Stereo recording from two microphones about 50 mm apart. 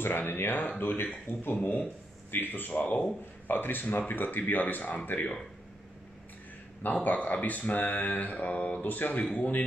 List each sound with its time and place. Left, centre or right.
0.0 s speech: left
3.4 s speech: left
6.8 s speech: left